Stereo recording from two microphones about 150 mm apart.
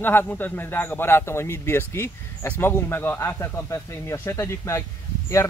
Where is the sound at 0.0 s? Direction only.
15° left (ahead or behind).